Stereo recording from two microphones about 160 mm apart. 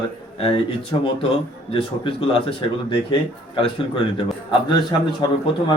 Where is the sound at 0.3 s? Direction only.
35° left (ahead or behind).